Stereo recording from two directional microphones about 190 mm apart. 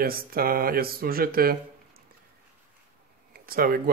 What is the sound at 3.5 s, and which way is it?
Speech, 50° right (ahead or behind).